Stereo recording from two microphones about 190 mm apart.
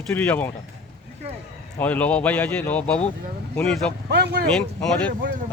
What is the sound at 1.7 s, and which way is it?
Speech, 10° left (ahead or behind).